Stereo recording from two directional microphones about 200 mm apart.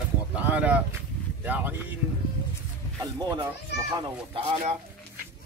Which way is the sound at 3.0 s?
20° right (ahead or behind).